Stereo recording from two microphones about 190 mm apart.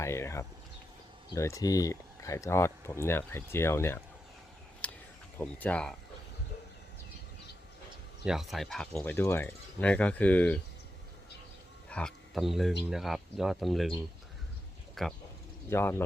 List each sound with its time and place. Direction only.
0.0 s speech: 15° left (ahead or behind)
4.8 s a sound: 5° left (ahead or behind)
5.4 s speech: 5° left (ahead or behind)
8.2 s speech: centre (ahead or behind)
11.9 s speech: 5° left (ahead or behind)
15.0 s speech: centre (ahead or behind)
15.7 s speech: 10° left (ahead or behind)